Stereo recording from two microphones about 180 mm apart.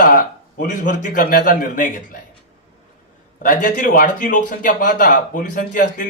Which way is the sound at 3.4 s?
50° left (ahead or behind).